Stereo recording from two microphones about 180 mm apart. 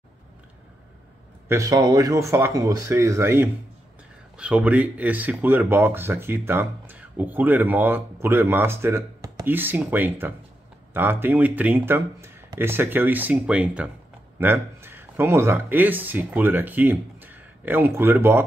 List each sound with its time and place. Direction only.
1.5 s speech: 20° right (ahead or behind)